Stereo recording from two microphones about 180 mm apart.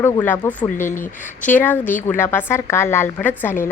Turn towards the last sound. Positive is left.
turn(degrees=10)  # may be behind; listen again after turning